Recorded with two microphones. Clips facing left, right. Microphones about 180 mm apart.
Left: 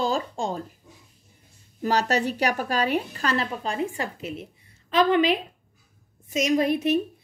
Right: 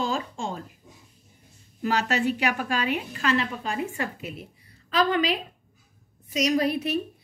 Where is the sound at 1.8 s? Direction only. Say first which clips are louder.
Left 2 dB; 40° left (ahead or behind).